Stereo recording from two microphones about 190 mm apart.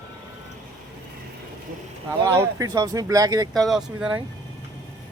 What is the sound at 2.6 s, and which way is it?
Speech, 20° right (ahead or behind).